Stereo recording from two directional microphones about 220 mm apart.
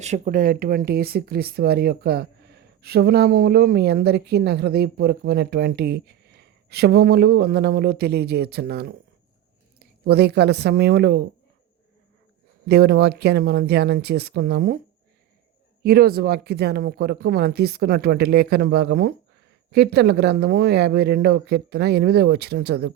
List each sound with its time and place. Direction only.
0.0 s speech: 35° right (ahead or behind)
10.0 s speech: 50° right (ahead or behind)
12.6 s speech: 50° right (ahead or behind)
15.8 s speech: 45° right (ahead or behind)